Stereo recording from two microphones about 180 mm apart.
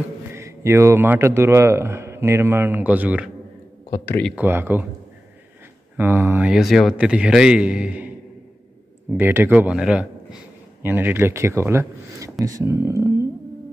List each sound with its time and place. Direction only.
0.3 s speech: 15° right (ahead or behind)
3.9 s speech: 10° left (ahead or behind)
4.4 s speech: 10° right (ahead or behind)
5.9 s a man's voice: 10° right (ahead or behind)
9.1 s speech: 10° right (ahead or behind)